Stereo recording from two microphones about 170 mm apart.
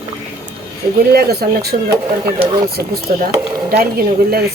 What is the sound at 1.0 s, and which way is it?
Speech, 65° right (ahead or behind).